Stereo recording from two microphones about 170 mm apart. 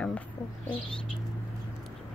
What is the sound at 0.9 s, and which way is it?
Bird, 5° left (ahead or behind).